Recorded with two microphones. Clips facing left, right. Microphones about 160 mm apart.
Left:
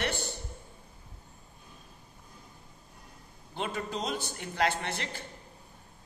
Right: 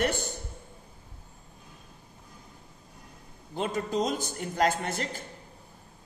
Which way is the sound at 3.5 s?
40° right (ahead or behind).